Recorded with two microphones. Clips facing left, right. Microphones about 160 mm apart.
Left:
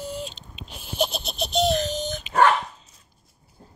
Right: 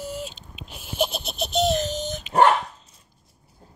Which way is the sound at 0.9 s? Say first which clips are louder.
Even; 5° right (ahead or behind).